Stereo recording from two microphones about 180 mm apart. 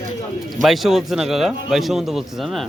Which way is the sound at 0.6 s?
Centre (ahead or behind).